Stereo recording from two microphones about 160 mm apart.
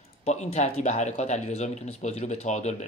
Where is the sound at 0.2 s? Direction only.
45° left (ahead or behind).